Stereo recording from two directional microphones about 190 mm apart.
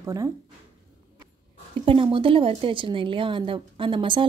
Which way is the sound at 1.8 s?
25° right (ahead or behind).